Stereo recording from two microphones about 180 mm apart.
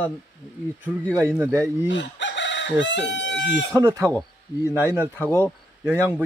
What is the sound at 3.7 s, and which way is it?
Speech, 20° right (ahead or behind).